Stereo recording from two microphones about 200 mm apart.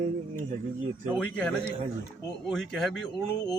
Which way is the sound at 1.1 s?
5° left (ahead or behind).